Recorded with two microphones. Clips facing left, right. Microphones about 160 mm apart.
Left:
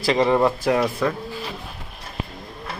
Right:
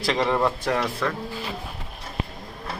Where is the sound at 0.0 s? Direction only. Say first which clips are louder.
Left 4 dB; 5° left (ahead or behind).